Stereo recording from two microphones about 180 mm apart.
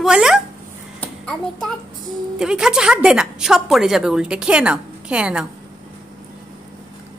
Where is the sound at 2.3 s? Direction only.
5° right (ahead or behind).